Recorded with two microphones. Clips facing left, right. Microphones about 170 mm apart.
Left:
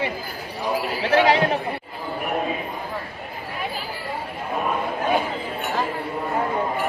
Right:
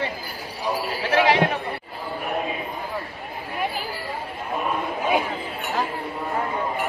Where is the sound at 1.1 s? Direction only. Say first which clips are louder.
Left 1 dB; 40° left (ahead or behind).